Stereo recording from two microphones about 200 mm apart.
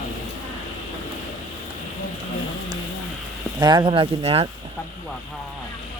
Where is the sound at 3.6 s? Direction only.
25° right (ahead or behind).